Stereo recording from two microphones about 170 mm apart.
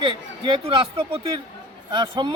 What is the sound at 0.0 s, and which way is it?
A man's voice, 30° right (ahead or behind).